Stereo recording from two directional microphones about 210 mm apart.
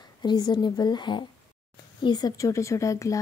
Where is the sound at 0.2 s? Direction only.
20° left (ahead or behind).